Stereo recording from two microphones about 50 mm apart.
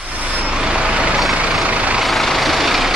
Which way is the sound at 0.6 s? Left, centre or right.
Centre.